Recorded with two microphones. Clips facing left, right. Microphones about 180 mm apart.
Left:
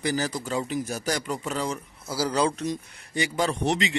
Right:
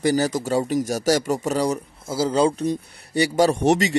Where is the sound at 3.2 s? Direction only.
40° right (ahead or behind).